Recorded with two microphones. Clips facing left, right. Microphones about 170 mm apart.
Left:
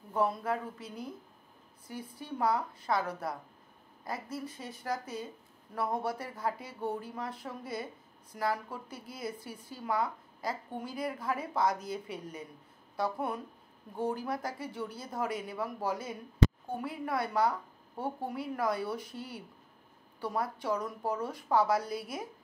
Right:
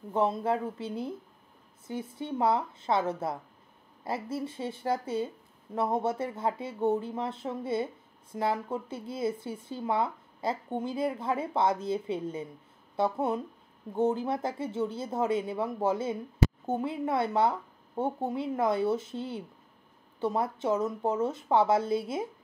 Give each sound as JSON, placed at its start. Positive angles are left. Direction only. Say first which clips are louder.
{"t": 0.1, "sound": "a woman's voice", "louder": "right 4 dB", "side_deg": -25}